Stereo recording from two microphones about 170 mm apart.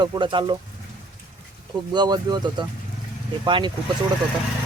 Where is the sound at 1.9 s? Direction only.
25° right (ahead or behind).